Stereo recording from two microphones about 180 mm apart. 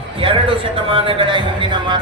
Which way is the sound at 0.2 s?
30° right (ahead or behind).